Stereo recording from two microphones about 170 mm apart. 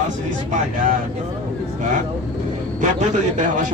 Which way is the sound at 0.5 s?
50° right (ahead or behind).